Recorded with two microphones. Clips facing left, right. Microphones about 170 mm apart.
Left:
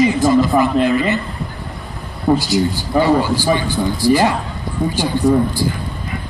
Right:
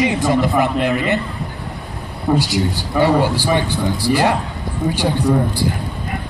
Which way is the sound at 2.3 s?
65° right (ahead or behind).